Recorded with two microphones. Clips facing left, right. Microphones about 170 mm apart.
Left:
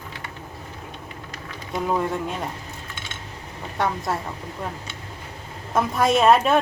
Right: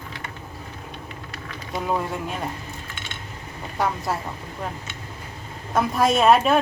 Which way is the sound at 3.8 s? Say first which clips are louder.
Even; centre (ahead or behind).